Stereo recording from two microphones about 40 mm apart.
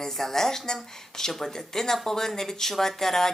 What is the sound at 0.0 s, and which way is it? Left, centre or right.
Speech, centre.